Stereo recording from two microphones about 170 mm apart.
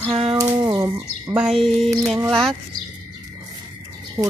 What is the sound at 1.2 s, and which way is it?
Speech, 5° right (ahead or behind).